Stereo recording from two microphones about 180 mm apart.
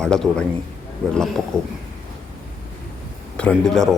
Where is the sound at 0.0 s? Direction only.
5° left (ahead or behind).